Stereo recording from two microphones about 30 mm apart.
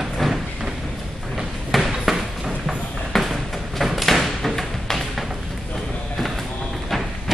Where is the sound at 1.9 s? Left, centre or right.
Centre.